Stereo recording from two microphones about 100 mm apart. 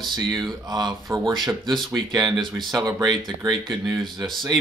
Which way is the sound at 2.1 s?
45° right (ahead or behind).